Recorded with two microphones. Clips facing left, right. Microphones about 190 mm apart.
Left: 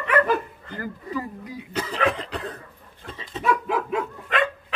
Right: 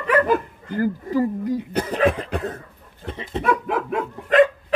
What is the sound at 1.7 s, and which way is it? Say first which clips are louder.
Speech: right 5 dB; 55° right (ahead or behind).